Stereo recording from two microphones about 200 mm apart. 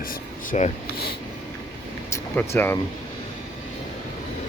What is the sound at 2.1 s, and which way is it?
Speech, 10° left (ahead or behind).